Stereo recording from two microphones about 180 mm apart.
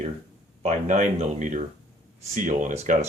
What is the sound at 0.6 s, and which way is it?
Speech, 40° right (ahead or behind).